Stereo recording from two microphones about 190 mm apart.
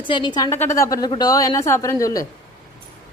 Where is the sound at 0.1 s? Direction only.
25° left (ahead or behind).